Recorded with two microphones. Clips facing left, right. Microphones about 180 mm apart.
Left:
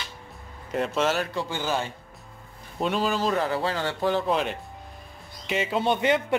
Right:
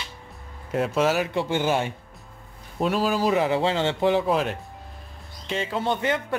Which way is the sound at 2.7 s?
Centre (ahead or behind).